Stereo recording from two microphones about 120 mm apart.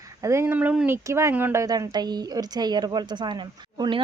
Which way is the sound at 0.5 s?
10° right (ahead or behind).